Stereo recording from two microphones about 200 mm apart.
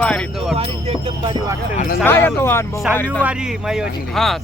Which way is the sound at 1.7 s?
40° left (ahead or behind).